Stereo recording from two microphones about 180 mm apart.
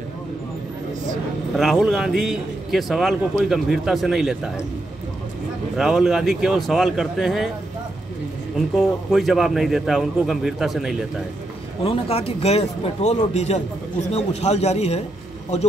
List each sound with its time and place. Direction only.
1.6 s a man's voice: centre (ahead or behind)
5.8 s a man's voice: centre (ahead or behind)
8.5 s a man's voice: centre (ahead or behind)
11.8 s speech: 30° left (ahead or behind)